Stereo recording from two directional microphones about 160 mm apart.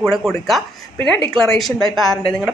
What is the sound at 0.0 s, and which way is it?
A woman's voice, centre (ahead or behind).